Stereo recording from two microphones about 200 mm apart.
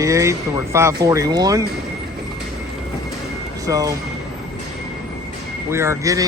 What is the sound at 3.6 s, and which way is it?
Speech, 15° right (ahead or behind).